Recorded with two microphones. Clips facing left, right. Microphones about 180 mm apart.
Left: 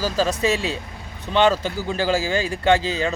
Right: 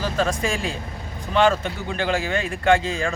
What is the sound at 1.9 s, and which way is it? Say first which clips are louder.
A man's voice: left 2 dB; 35° left (ahead or behind).